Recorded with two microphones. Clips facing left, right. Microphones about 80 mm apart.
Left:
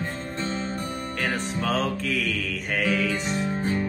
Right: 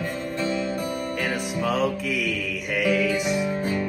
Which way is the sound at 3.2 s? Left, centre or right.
Left.